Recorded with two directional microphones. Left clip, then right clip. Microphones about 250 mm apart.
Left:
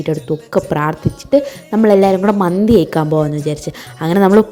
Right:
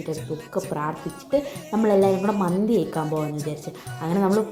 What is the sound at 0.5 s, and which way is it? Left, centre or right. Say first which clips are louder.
A woman's voice: left 11 dB; left.